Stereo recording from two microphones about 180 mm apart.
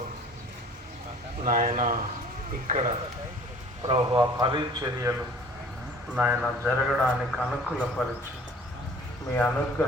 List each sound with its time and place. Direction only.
1.5 s speech: 50° right (ahead or behind)
3.8 s a man's voice: 30° right (ahead or behind)
6.1 s a man's voice: 10° right (ahead or behind)
9.3 s a man's voice: 10° left (ahead or behind)